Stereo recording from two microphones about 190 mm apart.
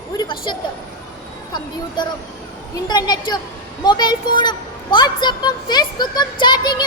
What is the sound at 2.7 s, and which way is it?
A woman's voice, 20° left (ahead or behind).